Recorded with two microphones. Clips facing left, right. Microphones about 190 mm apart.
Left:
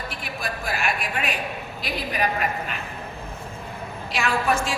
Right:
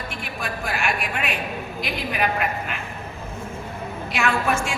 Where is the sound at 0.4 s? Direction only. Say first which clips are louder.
Right 1 dB; 40° left (ahead or behind).